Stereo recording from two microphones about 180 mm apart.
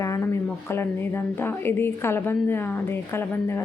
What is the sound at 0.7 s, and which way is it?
A woman's voice, 15° left (ahead or behind).